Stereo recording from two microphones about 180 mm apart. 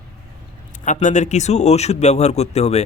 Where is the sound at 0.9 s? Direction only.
40° left (ahead or behind).